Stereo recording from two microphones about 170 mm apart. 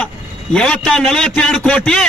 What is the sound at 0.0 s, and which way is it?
A man's voice, 5° left (ahead or behind).